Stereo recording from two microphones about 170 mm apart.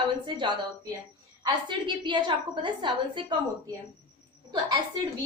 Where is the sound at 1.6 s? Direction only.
30° right (ahead or behind).